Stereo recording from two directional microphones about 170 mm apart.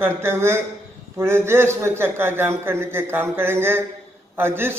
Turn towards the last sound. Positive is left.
turn(degrees=-15)  # may be behind; listen again after turning